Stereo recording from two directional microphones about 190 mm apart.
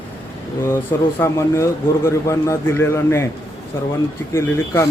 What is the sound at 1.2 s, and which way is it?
A man's voice, 15° left (ahead or behind).